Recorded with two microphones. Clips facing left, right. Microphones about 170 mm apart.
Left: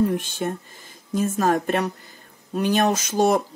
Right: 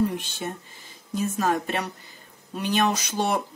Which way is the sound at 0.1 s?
50° left (ahead or behind).